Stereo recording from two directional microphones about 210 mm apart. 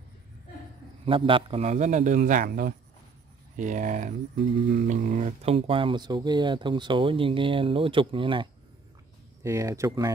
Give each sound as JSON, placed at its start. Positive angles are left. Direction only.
{"t": 1.0, "sound": "a man's voice", "side_deg": -25}